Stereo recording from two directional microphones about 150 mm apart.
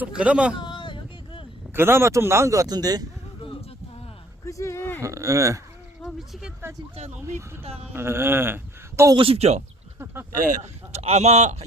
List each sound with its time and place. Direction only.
0.0 s speech: 5° right (ahead or behind)
0.6 s a sound: 35° left (ahead or behind)
1.7 s a man's voice: 15° right (ahead or behind)
4.4 s a sound: 20° left (ahead or behind)
4.9 s a man's voice: 20° right (ahead or behind)
6.0 s a sound: centre (ahead or behind)
7.9 s speech: 15° right (ahead or behind)
9.1 s speech: 40° right (ahead or behind)
10.3 s speech: 60° right (ahead or behind)